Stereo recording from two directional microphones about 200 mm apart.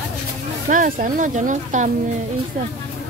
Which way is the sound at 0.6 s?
40° right (ahead or behind).